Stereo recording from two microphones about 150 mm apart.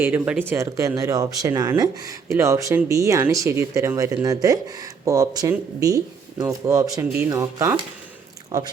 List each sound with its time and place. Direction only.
0.0 s speech: 10° right (ahead or behind)